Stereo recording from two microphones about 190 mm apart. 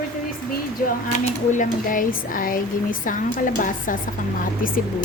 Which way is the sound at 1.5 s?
45° left (ahead or behind).